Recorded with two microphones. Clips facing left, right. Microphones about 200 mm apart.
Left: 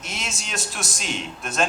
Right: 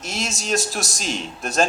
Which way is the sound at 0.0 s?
40° right (ahead or behind).